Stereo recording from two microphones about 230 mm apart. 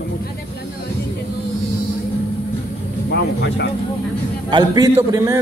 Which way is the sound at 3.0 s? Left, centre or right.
Left.